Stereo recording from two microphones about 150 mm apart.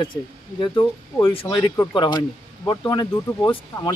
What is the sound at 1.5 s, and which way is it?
Speech, 15° left (ahead or behind).